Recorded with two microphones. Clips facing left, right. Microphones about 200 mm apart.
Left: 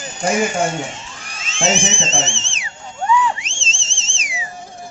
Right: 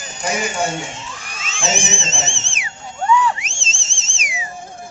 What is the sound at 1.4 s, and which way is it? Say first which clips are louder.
Speech: left 4 dB; 30° left (ahead or behind).